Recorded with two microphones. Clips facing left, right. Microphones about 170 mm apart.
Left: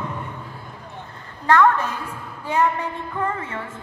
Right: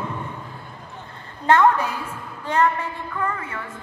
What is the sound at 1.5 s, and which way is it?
Speech, 25° right (ahead or behind).